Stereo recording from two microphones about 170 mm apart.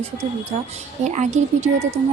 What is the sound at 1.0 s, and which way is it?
Speech, 45° right (ahead or behind).